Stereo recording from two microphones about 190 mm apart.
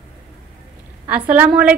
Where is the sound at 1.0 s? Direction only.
10° right (ahead or behind).